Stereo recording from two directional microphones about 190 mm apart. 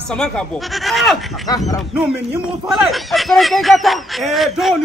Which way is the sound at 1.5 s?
20° left (ahead or behind).